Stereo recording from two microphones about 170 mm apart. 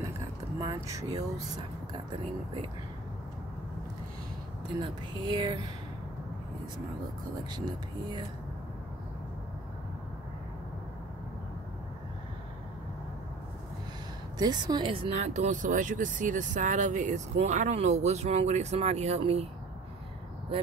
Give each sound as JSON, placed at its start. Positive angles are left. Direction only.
{"t": 0.6, "sound": "speech", "side_deg": -20}
{"t": 4.8, "sound": "speech", "side_deg": -25}
{"t": 14.4, "sound": "speech", "side_deg": -25}